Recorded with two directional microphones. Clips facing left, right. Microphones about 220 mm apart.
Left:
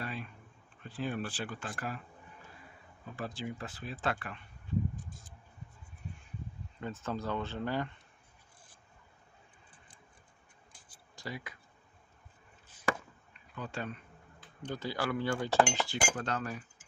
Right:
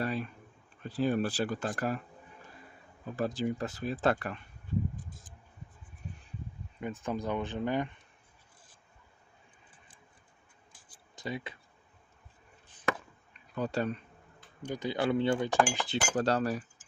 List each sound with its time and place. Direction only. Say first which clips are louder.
0.0 s a sound: right 8 dB; 40° right (ahead or behind)
0.9 s speech: right 7 dB; 40° right (ahead or behind)
3.2 s speech: right 8 dB; 40° right (ahead or behind)
6.7 s speech: right 3 dB; 15° right (ahead or behind)
11.1 s speech: right 5 dB; 20° right (ahead or behind)
13.6 s speech: right 8 dB; 40° right (ahead or behind)
14.6 s speech: right 4 dB; 15° right (ahead or behind)
16.1 s speech: right 8 dB; 35° right (ahead or behind)